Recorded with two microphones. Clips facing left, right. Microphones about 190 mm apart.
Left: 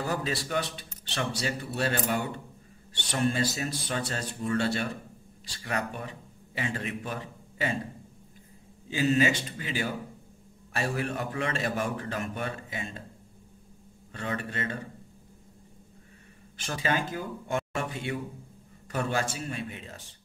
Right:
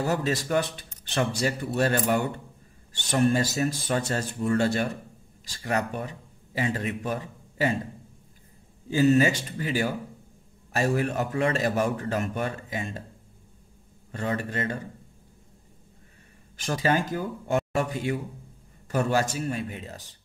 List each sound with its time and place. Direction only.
0.0 s a man's voice: 40° right (ahead or behind)
8.9 s a man's voice: 40° right (ahead or behind)
14.1 s a man's voice: 40° right (ahead or behind)
16.5 s a man's voice: 40° right (ahead or behind)